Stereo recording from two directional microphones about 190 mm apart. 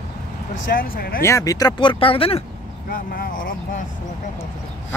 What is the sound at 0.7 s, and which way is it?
Speech, 50° left (ahead or behind).